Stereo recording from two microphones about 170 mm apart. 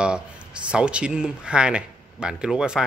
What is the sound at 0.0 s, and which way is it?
Speech, 5° right (ahead or behind).